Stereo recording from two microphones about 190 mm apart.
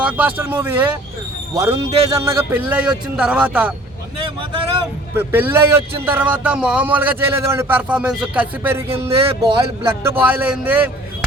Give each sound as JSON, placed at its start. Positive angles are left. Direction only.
{"t": 0.0, "sound": "a man's voice", "side_deg": -10}
{"t": 5.1, "sound": "a man's voice", "side_deg": -10}
{"t": 8.9, "sound": "speech", "side_deg": -30}
{"t": 10.1, "sound": "a man's voice", "side_deg": -10}